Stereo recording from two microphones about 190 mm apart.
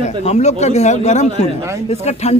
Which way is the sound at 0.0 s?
35° left (ahead or behind).